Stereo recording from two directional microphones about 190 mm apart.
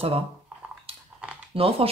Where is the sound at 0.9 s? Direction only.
30° right (ahead or behind).